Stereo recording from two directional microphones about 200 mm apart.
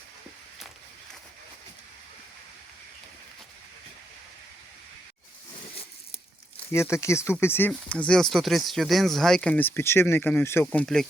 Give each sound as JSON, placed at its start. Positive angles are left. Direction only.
{"t": 6.7, "sound": "speech", "side_deg": 15}